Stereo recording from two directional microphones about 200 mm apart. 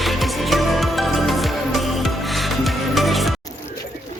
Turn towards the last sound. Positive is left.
turn(degrees=0)  # may be behind; listen again after turning